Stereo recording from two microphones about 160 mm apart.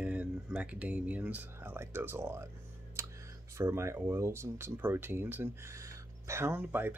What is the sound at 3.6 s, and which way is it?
Speech, 15° right (ahead or behind).